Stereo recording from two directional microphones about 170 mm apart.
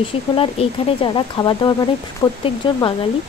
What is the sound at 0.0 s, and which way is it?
Speech, 30° left (ahead or behind).